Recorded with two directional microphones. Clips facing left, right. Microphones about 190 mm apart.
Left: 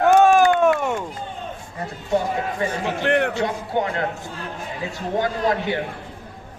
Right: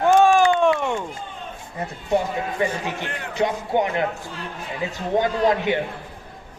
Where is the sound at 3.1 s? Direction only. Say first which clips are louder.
Left 14 dB; 70° left (ahead or behind).